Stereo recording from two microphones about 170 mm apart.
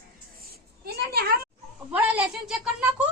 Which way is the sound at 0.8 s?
65° right (ahead or behind).